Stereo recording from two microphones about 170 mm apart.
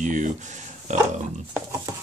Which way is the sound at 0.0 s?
45° right (ahead or behind).